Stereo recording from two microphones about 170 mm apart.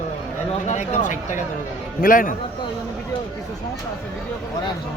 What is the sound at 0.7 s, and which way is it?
Speech, 45° left (ahead or behind).